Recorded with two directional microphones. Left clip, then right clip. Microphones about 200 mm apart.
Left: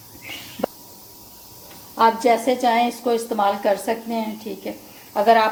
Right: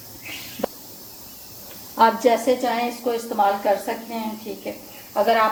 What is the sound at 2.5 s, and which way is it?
A woman's voice, 40° left (ahead or behind).